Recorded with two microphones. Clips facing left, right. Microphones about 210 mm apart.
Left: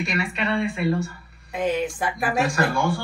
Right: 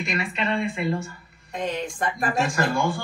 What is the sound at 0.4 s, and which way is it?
Speech, 15° right (ahead or behind).